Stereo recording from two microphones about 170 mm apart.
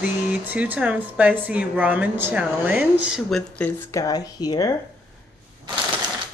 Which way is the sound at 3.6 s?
20° left (ahead or behind).